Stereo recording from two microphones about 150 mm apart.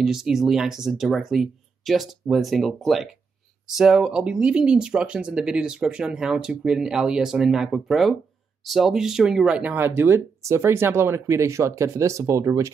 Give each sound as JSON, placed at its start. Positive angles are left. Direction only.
{"t": 0.0, "sound": "speech", "side_deg": -5}